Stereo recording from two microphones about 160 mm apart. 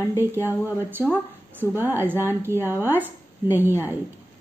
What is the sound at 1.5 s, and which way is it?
Speech, 10° right (ahead or behind).